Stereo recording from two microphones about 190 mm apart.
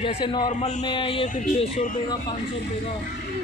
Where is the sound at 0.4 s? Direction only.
40° left (ahead or behind).